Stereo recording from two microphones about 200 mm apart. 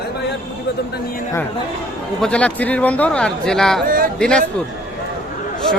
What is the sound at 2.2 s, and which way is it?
A man's voice, 5° left (ahead or behind).